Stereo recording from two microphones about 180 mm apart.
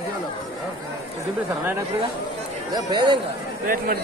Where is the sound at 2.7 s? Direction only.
25° right (ahead or behind).